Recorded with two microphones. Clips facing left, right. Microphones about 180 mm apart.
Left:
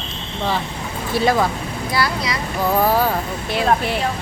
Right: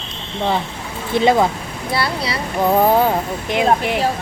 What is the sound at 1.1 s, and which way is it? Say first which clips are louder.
Speech: right 3 dB; 20° right (ahead or behind).